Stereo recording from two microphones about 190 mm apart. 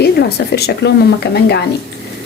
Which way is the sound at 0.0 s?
60° left (ahead or behind).